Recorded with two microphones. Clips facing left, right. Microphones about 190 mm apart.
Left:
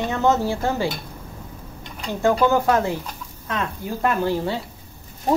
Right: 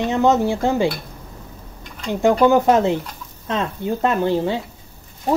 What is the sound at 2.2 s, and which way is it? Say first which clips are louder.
Speech: right 4 dB; 20° right (ahead or behind).